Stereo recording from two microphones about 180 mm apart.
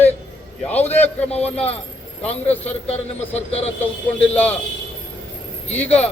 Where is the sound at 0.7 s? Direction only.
10° left (ahead or behind).